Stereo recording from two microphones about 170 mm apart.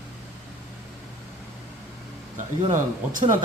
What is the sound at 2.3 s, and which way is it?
Speech, 50° right (ahead or behind).